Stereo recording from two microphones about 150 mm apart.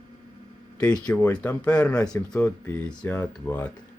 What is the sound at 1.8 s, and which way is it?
Speech, 5° left (ahead or behind).